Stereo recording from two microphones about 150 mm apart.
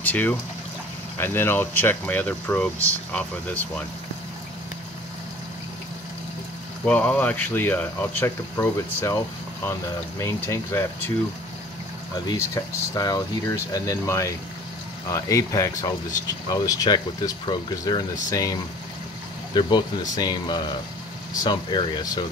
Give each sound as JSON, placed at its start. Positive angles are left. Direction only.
{"t": 0.0, "sound": "speech", "side_deg": 10}
{"t": 6.9, "sound": "speech", "side_deg": 10}
{"t": 12.9, "sound": "speech", "side_deg": 25}